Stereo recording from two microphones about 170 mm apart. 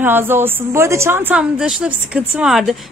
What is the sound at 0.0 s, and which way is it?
A woman's voice, 10° right (ahead or behind).